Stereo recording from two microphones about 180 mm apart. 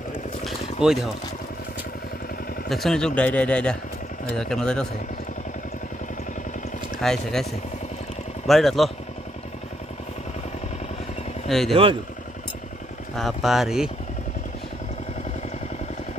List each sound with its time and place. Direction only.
0.4 s a sound: centre (ahead or behind)
2.7 s speech: centre (ahead or behind)
7.0 s speech: 5° left (ahead or behind)
8.5 s speech: centre (ahead or behind)
11.4 s speech: centre (ahead or behind)
11.7 s speech: 30° right (ahead or behind)
13.1 s speech: centre (ahead or behind)